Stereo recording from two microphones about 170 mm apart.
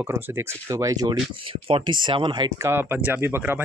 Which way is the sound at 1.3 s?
30° right (ahead or behind).